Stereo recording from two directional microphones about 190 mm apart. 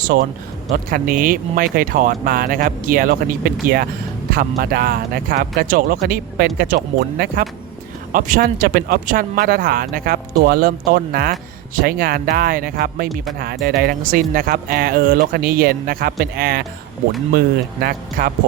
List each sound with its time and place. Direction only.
0.1 s speech: 50° right (ahead or behind)